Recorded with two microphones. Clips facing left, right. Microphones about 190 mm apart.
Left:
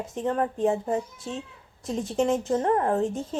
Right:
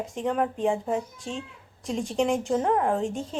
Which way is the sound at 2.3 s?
Centre (ahead or behind).